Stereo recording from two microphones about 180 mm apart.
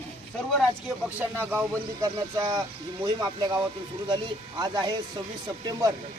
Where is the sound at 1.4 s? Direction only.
10° right (ahead or behind).